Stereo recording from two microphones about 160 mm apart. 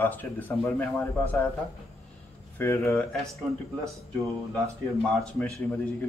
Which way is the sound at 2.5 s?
15° left (ahead or behind).